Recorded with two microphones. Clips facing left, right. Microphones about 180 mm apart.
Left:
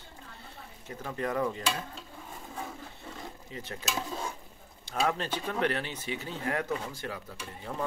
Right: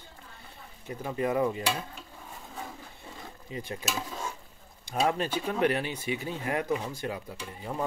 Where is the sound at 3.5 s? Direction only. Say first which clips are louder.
Right 6 dB; 15° right (ahead or behind).